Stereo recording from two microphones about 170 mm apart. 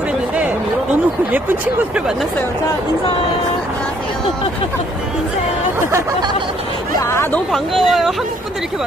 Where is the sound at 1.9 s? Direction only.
5° right (ahead or behind).